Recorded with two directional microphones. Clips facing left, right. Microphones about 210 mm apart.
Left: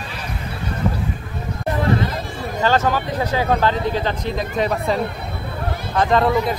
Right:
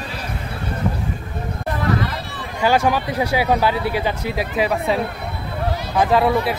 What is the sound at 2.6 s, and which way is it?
Speech, 10° right (ahead or behind).